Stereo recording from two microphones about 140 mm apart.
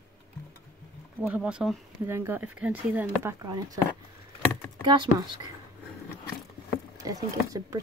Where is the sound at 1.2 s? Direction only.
5° right (ahead or behind).